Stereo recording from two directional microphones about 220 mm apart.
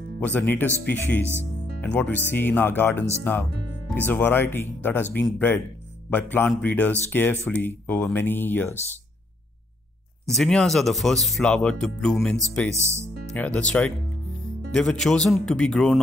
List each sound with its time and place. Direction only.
0.2 s speech: 5° left (ahead or behind)
10.2 s speech: centre (ahead or behind)
12.8 s speech: 10° right (ahead or behind)
13.3 s speech: 5° left (ahead or behind)